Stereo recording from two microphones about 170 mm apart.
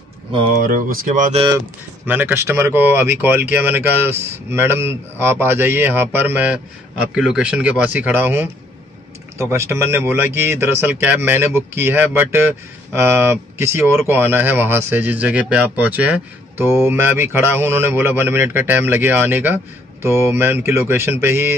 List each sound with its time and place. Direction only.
0.3 s speech: 30° right (ahead or behind)
0.6 s speech: 55° right (ahead or behind)
2.0 s speech: 10° right (ahead or behind)